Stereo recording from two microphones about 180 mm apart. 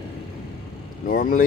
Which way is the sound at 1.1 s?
50° left (ahead or behind).